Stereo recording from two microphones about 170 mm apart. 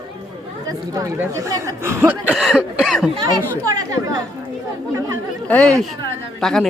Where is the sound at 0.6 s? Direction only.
20° right (ahead or behind).